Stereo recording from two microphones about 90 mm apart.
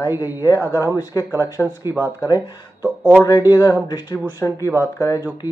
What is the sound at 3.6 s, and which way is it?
Speech, 40° left (ahead or behind).